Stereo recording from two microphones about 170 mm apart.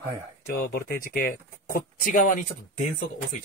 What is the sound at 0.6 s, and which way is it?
Speech, 60° left (ahead or behind).